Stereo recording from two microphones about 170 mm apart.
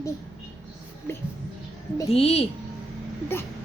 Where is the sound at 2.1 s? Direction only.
35° left (ahead or behind).